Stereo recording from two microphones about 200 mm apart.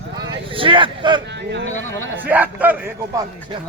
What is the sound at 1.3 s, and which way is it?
Speech, 60° right (ahead or behind).